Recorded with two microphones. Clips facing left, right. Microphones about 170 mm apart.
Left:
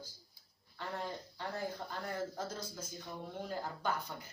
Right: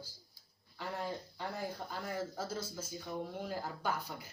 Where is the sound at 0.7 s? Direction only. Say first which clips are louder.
Right 1 dB; 10° right (ahead or behind).